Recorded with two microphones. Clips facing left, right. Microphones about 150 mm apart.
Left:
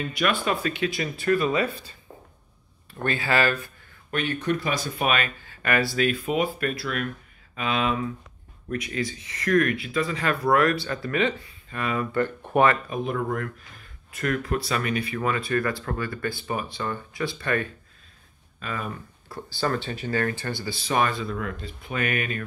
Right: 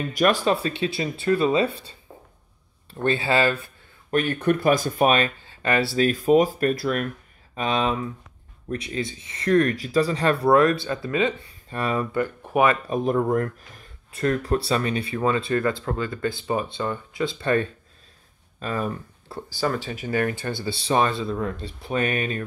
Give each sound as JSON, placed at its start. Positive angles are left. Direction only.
{"t": 0.1, "sound": "speech", "side_deg": -40}
{"t": 2.9, "sound": "speech", "side_deg": -25}
{"t": 4.1, "sound": "speech", "side_deg": -45}
{"t": 11.7, "sound": "speech", "side_deg": -35}
{"t": 12.1, "sound": "speech", "side_deg": -10}
{"t": 12.8, "sound": "speech", "side_deg": -35}
{"t": 19.6, "sound": "speech", "side_deg": -10}